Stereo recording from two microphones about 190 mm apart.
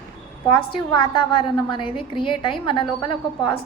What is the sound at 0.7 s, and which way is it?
A woman's voice, 25° left (ahead or behind).